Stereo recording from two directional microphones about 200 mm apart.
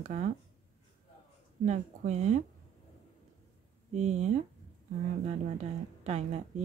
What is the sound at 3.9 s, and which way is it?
Speech, 35° right (ahead or behind).